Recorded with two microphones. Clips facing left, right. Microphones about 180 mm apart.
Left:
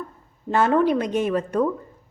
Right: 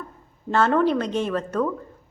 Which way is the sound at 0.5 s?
15° left (ahead or behind).